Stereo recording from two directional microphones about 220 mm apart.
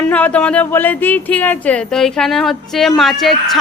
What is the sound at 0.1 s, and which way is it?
A woman's voice, 5° left (ahead or behind).